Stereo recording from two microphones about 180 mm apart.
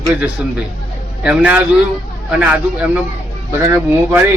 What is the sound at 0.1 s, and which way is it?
A man's voice, 10° right (ahead or behind).